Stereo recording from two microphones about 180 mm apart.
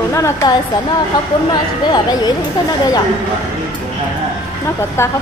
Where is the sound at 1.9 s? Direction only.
25° left (ahead or behind).